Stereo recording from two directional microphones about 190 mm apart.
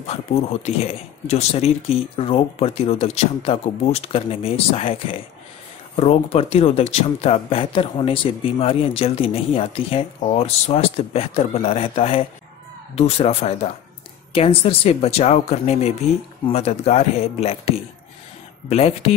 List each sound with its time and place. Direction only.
0.0 s speech: 35° left (ahead or behind)